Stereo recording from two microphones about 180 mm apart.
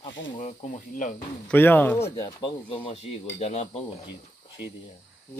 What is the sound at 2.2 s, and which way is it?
Speech, 25° left (ahead or behind).